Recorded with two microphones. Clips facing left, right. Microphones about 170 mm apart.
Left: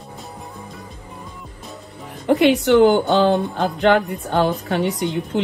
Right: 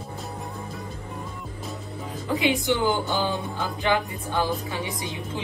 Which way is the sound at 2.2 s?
70° left (ahead or behind).